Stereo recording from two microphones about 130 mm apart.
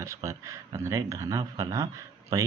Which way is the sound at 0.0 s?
25° right (ahead or behind).